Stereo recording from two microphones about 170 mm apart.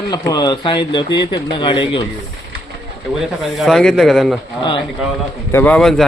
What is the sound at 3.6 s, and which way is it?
Speech, centre (ahead or behind).